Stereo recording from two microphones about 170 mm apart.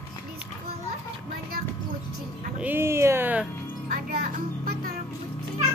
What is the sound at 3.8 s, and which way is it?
Music, 60° right (ahead or behind).